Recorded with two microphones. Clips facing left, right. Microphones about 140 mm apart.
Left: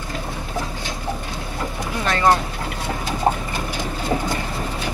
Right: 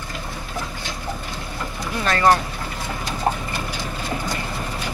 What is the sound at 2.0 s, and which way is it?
Speech, 20° left (ahead or behind).